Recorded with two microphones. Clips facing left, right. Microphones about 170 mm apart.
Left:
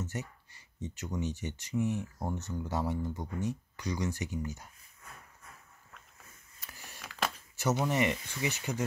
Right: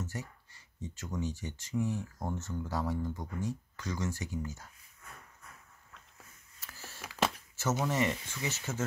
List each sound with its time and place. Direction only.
0.0 s speech: 20° left (ahead or behind)
6.6 s camera: 15° left (ahead or behind)
7.1 s a sound: 25° right (ahead or behind)
7.5 s speech: 15° left (ahead or behind)